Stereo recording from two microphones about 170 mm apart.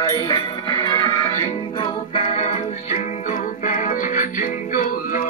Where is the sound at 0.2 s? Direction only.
30° left (ahead or behind).